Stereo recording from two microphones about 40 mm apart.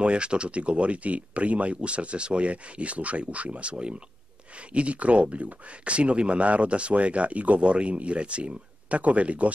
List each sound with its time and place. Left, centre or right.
0.0 s speech: right